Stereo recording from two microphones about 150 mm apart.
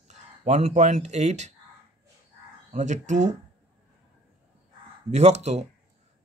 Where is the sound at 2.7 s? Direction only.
55° right (ahead or behind).